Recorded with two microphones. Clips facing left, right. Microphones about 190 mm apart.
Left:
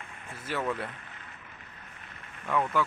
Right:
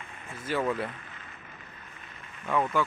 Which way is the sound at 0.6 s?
Centre (ahead or behind).